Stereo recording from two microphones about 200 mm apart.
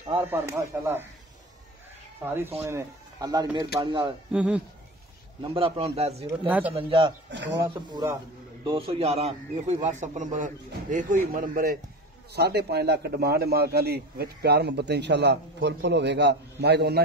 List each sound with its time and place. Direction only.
0.1 s speech: 10° right (ahead or behind)
2.2 s speech: 10° right (ahead or behind)
4.3 s speech: 5° right (ahead or behind)
5.4 s speech: 25° right (ahead or behind)
6.2 s speech: 10° right (ahead or behind)
6.7 s speech: 30° right (ahead or behind)
7.2 s a man's voice: 65° right (ahead or behind)
7.5 s a man's voice: 20° right (ahead or behind); by 17.0 s 55° right (ahead or behind)